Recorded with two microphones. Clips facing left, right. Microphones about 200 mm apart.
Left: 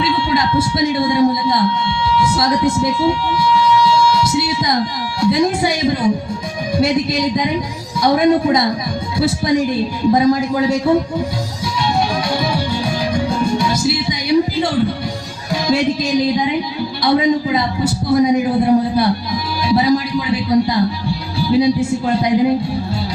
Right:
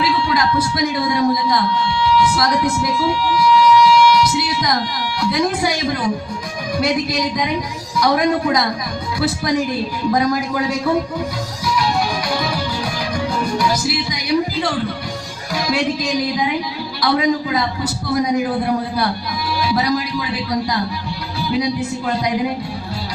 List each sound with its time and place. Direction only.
0.0 s a man's voice: 25° left (ahead or behind)
2.1 s a sound: 25° left (ahead or behind)
5.2 s a man's voice: 25° left (ahead or behind)
11.6 s music: 25° left (ahead or behind)
15.6 s a man's voice: 25° left (ahead or behind)